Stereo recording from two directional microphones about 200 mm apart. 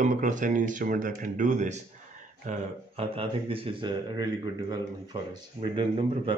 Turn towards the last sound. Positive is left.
turn(degrees=-25)  # may be behind; listen again after turning